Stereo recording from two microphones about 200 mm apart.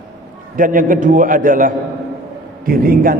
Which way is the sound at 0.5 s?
40° right (ahead or behind).